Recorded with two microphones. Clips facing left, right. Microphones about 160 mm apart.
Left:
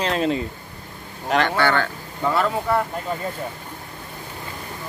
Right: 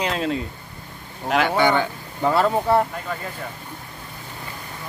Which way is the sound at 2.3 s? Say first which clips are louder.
Right 3 dB; 30° right (ahead or behind).